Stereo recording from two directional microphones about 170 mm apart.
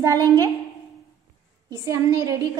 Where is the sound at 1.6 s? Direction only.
20° right (ahead or behind).